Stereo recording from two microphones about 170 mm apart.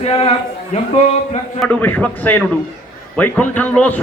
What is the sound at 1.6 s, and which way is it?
A man's voice, 10° left (ahead or behind).